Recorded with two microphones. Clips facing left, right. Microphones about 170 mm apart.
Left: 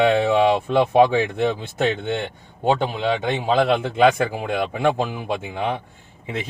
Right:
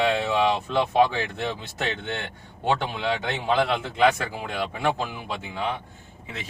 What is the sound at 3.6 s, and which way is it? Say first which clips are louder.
Speech: left 5 dB; 55° left (ahead or behind).